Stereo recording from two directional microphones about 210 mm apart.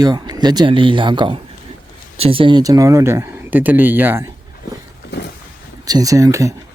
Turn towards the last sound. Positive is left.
turn(degrees=-15)  # may be behind; listen again after turning